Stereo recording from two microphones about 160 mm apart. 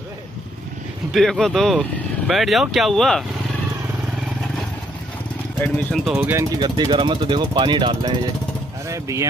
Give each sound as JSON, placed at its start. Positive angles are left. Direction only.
{"t": 1.1, "sound": "speech", "side_deg": 0}
{"t": 5.6, "sound": "speech", "side_deg": 5}
{"t": 6.1, "sound": "speech", "side_deg": -10}
{"t": 6.6, "sound": "speech", "side_deg": -30}